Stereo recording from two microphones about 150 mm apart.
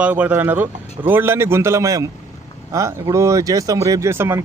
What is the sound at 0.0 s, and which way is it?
A man's voice, 10° right (ahead or behind).